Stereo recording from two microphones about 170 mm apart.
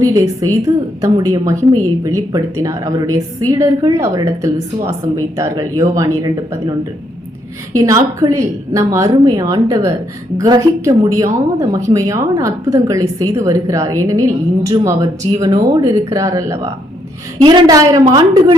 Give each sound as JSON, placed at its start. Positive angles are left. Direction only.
{"t": 0.0, "sound": "a woman's voice", "side_deg": -20}